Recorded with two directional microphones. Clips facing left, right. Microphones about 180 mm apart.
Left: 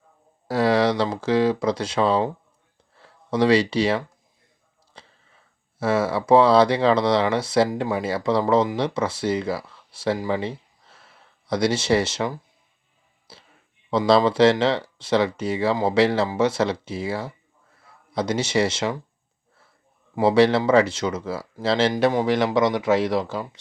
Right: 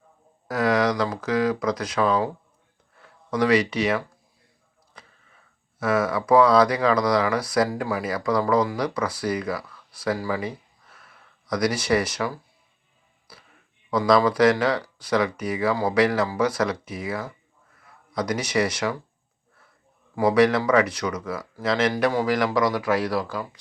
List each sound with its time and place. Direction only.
0.4 s speech: 30° left (ahead or behind)
4.9 s a sound: 30° left (ahead or behind)
5.8 s speech: 30° left (ahead or behind)
13.3 s a sound: 25° left (ahead or behind)
13.9 s speech: 25° left (ahead or behind)
20.1 s speech: 25° left (ahead or behind)